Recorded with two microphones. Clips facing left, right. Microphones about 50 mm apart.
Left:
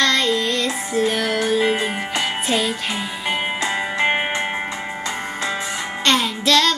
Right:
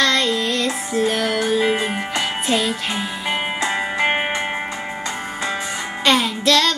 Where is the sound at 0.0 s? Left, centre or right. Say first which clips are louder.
Even; centre.